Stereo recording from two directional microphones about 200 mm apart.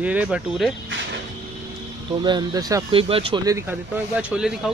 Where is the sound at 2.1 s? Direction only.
20° right (ahead or behind).